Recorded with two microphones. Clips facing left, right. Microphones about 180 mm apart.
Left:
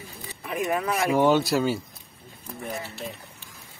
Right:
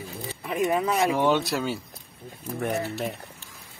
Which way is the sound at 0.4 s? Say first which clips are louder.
Right 2 dB; 25° right (ahead or behind).